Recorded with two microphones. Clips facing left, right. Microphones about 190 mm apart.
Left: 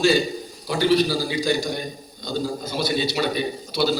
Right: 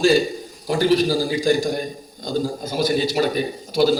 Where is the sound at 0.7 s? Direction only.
45° right (ahead or behind).